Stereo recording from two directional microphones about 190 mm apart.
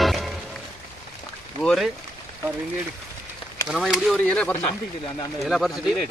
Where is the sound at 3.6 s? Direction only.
Centre (ahead or behind).